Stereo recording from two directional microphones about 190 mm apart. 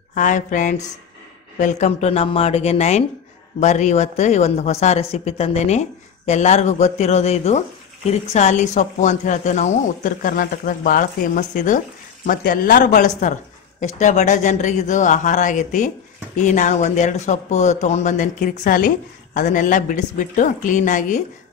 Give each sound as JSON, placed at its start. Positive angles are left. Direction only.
{"t": 0.1, "sound": "speech", "side_deg": 40}